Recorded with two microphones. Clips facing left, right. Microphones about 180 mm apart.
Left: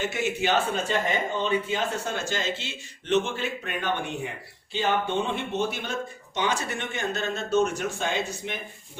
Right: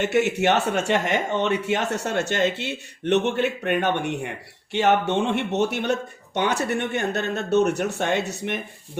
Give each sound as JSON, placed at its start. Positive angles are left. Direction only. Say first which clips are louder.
{"t": 0.0, "sound": "speech", "louder": "right 7 dB", "side_deg": -70}